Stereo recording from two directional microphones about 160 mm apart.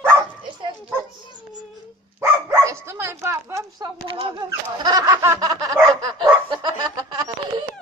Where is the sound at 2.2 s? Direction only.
20° right (ahead or behind).